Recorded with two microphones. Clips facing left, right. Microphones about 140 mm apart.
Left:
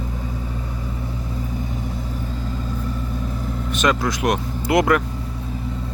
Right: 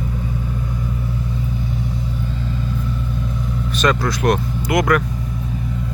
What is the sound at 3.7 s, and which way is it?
Speech, 20° left (ahead or behind).